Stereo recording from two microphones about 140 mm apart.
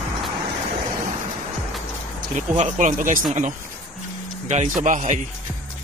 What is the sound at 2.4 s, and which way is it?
Speech, 60° right (ahead or behind).